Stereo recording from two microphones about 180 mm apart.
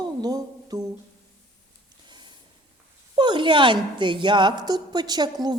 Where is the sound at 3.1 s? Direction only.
25° right (ahead or behind).